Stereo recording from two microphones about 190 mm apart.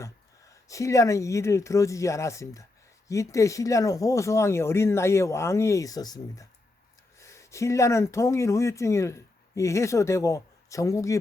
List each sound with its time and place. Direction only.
0.7 s speech: 15° left (ahead or behind)